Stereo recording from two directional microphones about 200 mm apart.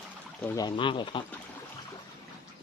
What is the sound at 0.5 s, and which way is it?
Speech, 20° left (ahead or behind).